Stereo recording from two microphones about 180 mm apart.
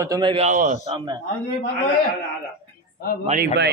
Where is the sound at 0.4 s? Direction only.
40° right (ahead or behind).